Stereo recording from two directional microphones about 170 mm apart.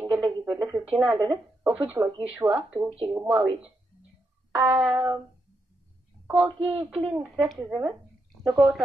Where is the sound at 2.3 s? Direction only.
10° right (ahead or behind).